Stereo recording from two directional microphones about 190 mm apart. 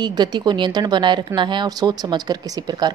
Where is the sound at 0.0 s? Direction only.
20° right (ahead or behind).